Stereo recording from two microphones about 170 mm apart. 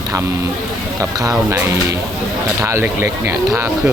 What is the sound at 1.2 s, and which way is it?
Speech, 15° right (ahead or behind).